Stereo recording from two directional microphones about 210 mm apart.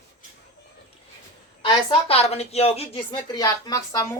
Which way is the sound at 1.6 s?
25° left (ahead or behind).